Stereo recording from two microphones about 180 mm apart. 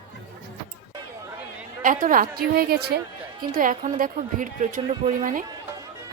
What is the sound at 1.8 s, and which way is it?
A woman's voice, 50° right (ahead or behind).